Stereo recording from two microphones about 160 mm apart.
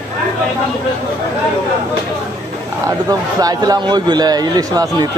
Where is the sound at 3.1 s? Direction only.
25° right (ahead or behind).